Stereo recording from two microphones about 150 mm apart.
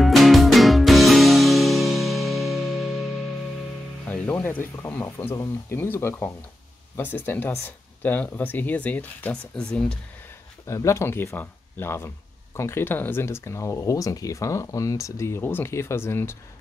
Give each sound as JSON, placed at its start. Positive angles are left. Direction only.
{"t": 0.0, "sound": "music", "side_deg": 0}
{"t": 4.1, "sound": "speech", "side_deg": 10}
{"t": 10.7, "sound": "speech", "side_deg": 20}